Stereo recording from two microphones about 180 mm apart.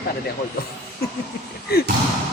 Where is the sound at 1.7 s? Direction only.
60° left (ahead or behind).